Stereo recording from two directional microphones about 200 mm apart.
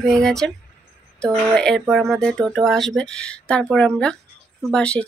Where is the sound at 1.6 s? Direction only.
Centre (ahead or behind).